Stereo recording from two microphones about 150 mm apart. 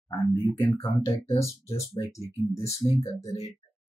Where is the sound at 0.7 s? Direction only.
35° left (ahead or behind).